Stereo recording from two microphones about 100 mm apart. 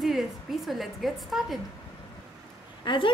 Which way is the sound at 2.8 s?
55° left (ahead or behind).